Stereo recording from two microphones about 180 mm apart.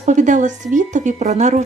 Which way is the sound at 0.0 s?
40° right (ahead or behind).